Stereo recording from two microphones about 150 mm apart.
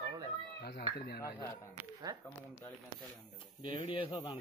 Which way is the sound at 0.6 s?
90° left.